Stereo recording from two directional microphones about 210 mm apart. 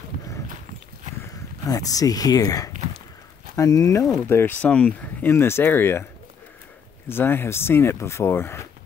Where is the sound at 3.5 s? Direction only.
15° left (ahead or behind).